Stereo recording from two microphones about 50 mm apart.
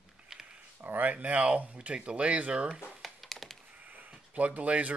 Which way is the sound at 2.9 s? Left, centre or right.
Centre.